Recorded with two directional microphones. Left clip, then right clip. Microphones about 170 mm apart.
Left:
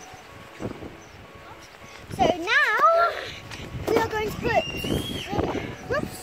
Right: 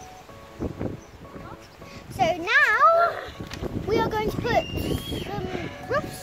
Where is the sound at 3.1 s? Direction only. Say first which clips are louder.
Even; 40° right (ahead or behind).